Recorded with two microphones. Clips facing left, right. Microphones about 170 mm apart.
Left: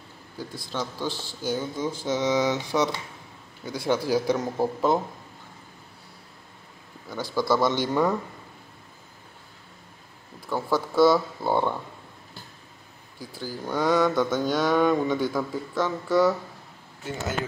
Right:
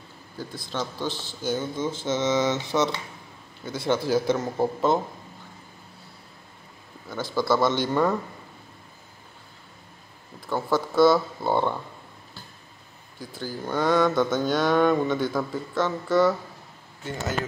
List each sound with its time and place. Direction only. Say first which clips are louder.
0.4 s mantra: right 1 dB; 10° left (ahead or behind)
2.7 s speech: right 1 dB; centre (ahead or behind)
3.6 s mantra: even; 10° left (ahead or behind)
4.5 s speech: right 1 dB; 5° left (ahead or behind)
7.1 s mantra: even; 10° left (ahead or behind)
10.5 s mantra: right 1 dB; 10° left (ahead or behind)
13.2 s mantra: right 1 dB; 10° left (ahead or behind)